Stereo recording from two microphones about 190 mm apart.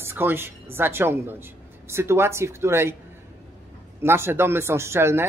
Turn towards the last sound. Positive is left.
turn(degrees=-15)  # may be behind; listen again after turning